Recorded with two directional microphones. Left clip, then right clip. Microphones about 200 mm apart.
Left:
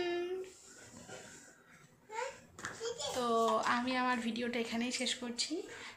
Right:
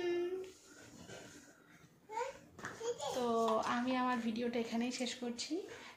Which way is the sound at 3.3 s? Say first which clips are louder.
Left 3 dB; 10° left (ahead or behind).